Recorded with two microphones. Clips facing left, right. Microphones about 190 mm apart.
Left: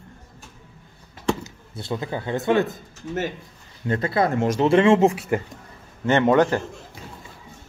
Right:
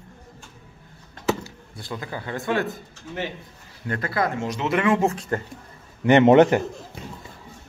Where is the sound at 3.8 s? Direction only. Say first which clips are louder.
Left 4 dB; 25° left (ahead or behind).